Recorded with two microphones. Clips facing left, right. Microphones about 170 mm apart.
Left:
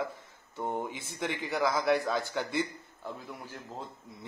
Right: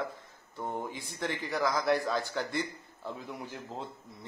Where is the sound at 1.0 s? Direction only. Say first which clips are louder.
Left 1 dB; 5° left (ahead or behind).